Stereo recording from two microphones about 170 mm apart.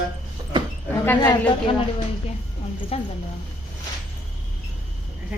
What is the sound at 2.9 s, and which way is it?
Speech, 35° left (ahead or behind).